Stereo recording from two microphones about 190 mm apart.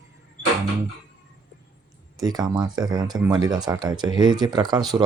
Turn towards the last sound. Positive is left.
turn(degrees=-20)  # may be behind; listen again after turning